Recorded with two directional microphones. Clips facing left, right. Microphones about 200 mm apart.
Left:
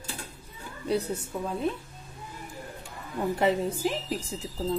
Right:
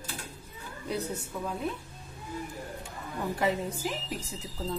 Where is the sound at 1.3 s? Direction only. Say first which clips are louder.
Left 3 dB; 30° left (ahead or behind).